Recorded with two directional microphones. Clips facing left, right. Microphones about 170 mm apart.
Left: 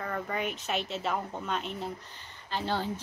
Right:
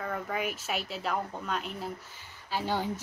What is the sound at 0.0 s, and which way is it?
Speech, centre (ahead or behind).